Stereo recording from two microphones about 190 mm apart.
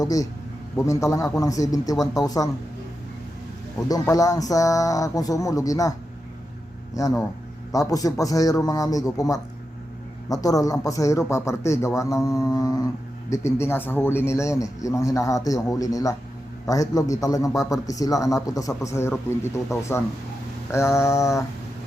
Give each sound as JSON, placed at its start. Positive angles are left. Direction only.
{"t": 0.0, "sound": "a man's voice", "side_deg": 20}
{"t": 3.8, "sound": "a man's voice", "side_deg": 20}
{"t": 6.9, "sound": "a man's voice", "side_deg": 15}